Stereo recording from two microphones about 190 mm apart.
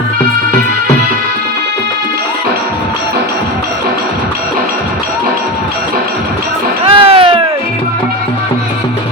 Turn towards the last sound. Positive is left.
turn(degrees=-30)  # may be behind; listen again after turning